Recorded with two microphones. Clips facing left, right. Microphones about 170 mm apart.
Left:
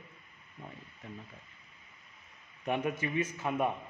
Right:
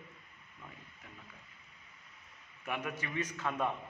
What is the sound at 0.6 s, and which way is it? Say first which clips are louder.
Speech: left 6 dB; 35° left (ahead or behind).